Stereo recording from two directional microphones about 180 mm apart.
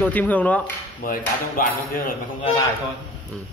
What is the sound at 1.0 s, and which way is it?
Hammer, 50° left (ahead or behind).